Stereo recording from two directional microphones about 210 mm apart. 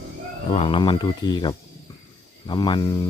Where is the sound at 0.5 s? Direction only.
25° left (ahead or behind).